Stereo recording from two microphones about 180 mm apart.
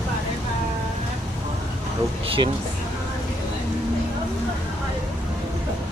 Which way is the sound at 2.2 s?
30° right (ahead or behind).